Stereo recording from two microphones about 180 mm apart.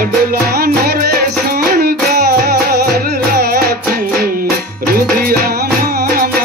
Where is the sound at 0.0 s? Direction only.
55° right (ahead or behind).